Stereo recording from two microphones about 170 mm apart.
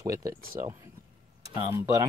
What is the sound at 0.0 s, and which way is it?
Speech, 20° right (ahead or behind).